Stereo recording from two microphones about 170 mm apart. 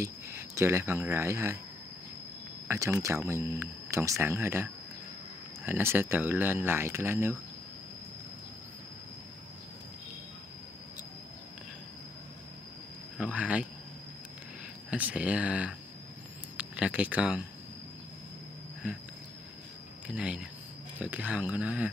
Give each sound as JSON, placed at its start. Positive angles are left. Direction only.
{"t": 0.0, "sound": "speech", "side_deg": -15}
{"t": 2.7, "sound": "speech", "side_deg": -20}
{"t": 13.2, "sound": "speech", "side_deg": -5}
{"t": 14.9, "sound": "speech", "side_deg": -10}
{"t": 20.1, "sound": "speech", "side_deg": -5}